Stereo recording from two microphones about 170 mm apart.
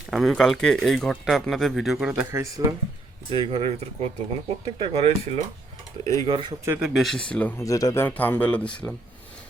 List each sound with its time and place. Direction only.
0.1 s speech: centre (ahead or behind)
2.3 s speech: 15° right (ahead or behind)
3.2 s speech: 30° right (ahead or behind)
6.7 s speech: 5° right (ahead or behind)
7.6 s a man's voice: 20° left (ahead or behind)